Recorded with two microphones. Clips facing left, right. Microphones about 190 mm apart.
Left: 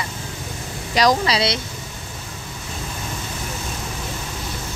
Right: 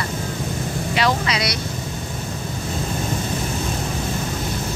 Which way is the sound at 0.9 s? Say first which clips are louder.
Left 4 dB; 35° left (ahead or behind).